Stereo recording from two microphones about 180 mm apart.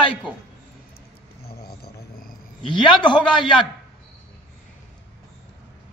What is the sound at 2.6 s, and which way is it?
Speech, 25° left (ahead or behind).